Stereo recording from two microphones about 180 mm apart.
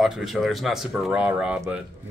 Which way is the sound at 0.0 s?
Centre (ahead or behind).